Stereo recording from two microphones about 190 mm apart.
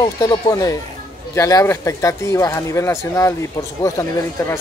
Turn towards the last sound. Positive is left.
turn(degrees=15)  # may be behind; listen again after turning